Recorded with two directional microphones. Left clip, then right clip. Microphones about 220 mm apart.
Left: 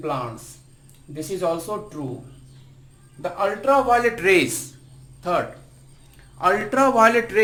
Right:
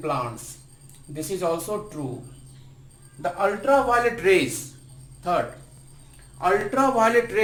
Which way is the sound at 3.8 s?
35° left (ahead or behind).